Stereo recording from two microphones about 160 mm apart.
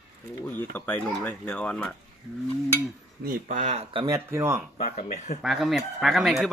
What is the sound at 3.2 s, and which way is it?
Speech, 55° right (ahead or behind).